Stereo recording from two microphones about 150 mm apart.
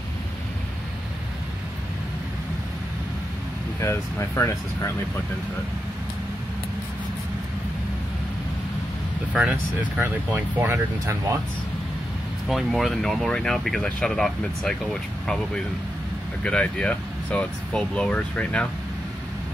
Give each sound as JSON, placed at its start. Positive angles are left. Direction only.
{"t": 3.8, "sound": "speech", "side_deg": 20}
{"t": 9.3, "sound": "speech", "side_deg": -10}
{"t": 12.4, "sound": "speech", "side_deg": 0}
{"t": 16.4, "sound": "speech", "side_deg": 5}